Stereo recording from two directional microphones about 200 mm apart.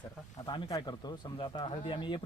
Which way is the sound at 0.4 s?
20° left (ahead or behind).